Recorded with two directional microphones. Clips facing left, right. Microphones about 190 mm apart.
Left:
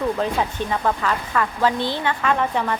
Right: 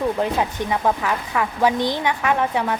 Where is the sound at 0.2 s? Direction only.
15° right (ahead or behind).